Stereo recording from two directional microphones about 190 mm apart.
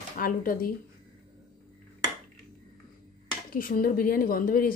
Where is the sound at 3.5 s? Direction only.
50° left (ahead or behind).